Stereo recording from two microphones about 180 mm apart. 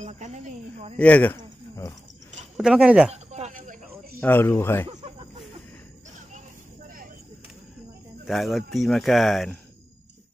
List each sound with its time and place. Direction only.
0.0 s a woman's voice: 45° right (ahead or behind)
0.9 s speech: 5° left (ahead or behind)
2.5 s speech: 5° right (ahead or behind)
3.1 s a sound: 40° right (ahead or behind)
4.2 s speech: 10° left (ahead or behind)
4.8 s a sound: 30° right (ahead or behind)
8.3 s speech: centre (ahead or behind)